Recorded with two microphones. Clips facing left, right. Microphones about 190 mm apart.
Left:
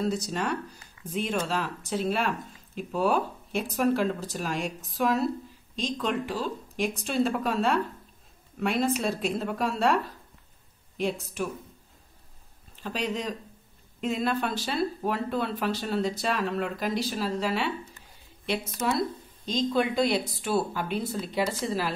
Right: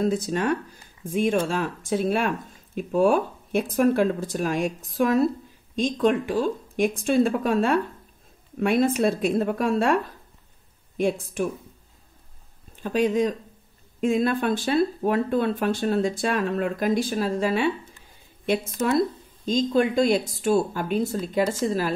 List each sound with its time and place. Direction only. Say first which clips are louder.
0.0 s speech: right 5 dB; 50° right (ahead or behind)
11.0 s speech: right 5 dB; 50° right (ahead or behind)
12.7 s speech: right 9 dB; 50° right (ahead or behind)